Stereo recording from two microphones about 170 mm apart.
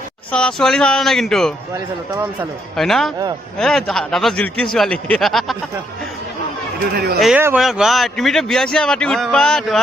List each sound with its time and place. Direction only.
0.3 s a man's voice: 5° left (ahead or behind)
2.7 s a man's voice: centre (ahead or behind)
6.9 s speech: 70° right (ahead or behind)
7.3 s a man's voice: 10° right (ahead or behind)